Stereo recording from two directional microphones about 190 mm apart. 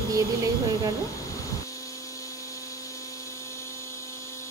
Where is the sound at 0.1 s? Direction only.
15° right (ahead or behind).